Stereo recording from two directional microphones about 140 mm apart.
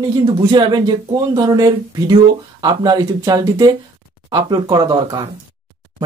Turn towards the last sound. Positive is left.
turn(degrees=-30)  # may be behind; listen again after turning